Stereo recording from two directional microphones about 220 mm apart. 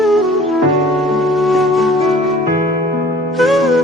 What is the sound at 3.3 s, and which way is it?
Music, centre (ahead or behind).